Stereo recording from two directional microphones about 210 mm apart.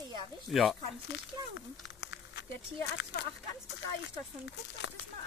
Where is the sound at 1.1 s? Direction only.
60° left (ahead or behind).